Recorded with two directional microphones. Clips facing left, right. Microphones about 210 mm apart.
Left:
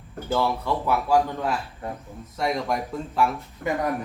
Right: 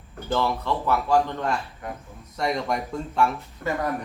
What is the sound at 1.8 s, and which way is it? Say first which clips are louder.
Speech: left 2 dB; 30° left (ahead or behind).